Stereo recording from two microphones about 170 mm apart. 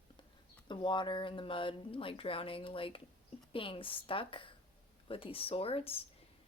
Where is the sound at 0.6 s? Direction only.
30° left (ahead or behind).